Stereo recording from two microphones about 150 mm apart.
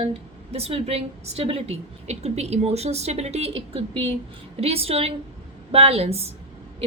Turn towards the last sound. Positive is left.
turn(degrees=-45)  # may be behind; listen again after turning